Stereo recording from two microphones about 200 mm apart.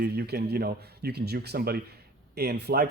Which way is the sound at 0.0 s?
55° right (ahead or behind).